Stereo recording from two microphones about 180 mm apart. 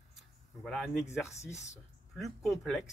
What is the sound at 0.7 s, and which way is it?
Speech, centre (ahead or behind).